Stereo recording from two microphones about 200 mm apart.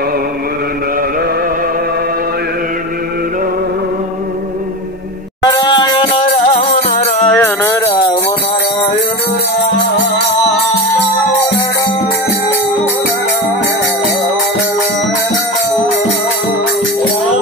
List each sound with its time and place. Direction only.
5.4 s music: 20° left (ahead or behind)
6.5 s music: 30° left (ahead or behind)
7.2 s music: 15° left (ahead or behind)